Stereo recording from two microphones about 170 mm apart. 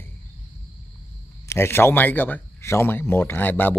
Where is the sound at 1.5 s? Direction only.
15° left (ahead or behind).